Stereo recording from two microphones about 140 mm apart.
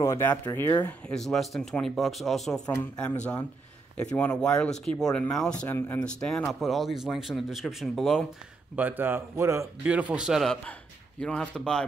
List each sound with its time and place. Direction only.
0.0 s speech: 20° left (ahead or behind); by 2.6 s centre (ahead or behind)
2.6 s speech: 15° left (ahead or behind)
8.7 s speech: 10° right (ahead or behind)
9.8 s speech: 10° right (ahead or behind)